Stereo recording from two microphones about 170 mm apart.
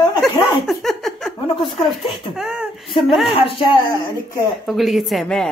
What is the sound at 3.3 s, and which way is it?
Speech, 30° left (ahead or behind).